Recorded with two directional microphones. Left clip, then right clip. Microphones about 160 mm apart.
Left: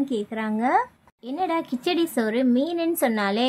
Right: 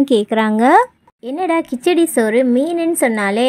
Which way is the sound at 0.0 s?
65° right (ahead or behind).